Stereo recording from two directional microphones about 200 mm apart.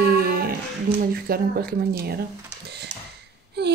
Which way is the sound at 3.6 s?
55° right (ahead or behind).